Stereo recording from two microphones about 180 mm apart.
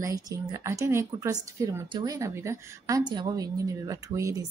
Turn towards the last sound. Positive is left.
turn(degrees=-15)  # may be behind; listen again after turning